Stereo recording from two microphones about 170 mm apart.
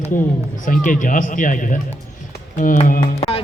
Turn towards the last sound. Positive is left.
turn(degrees=35)  # may be behind; listen again after turning